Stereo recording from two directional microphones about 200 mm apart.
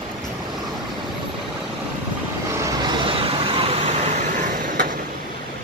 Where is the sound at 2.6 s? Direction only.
25° right (ahead or behind); by 4.9 s 45° right (ahead or behind).